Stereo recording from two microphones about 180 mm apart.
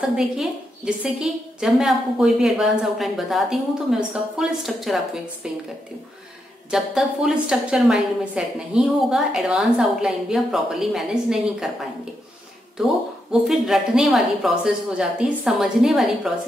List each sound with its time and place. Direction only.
0.0 s a woman's voice: centre (ahead or behind)
6.7 s a woman's voice: 5° right (ahead or behind)
12.7 s a woman's voice: centre (ahead or behind)